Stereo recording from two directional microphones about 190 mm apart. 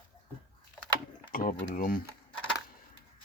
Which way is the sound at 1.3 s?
50° left (ahead or behind).